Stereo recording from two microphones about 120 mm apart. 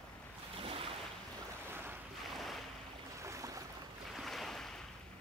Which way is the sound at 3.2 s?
25° right (ahead or behind).